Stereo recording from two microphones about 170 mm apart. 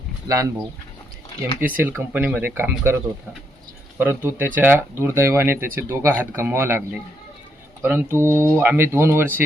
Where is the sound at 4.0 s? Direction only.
10° right (ahead or behind).